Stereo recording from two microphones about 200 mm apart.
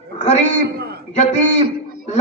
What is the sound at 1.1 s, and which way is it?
Speech, 35° left (ahead or behind).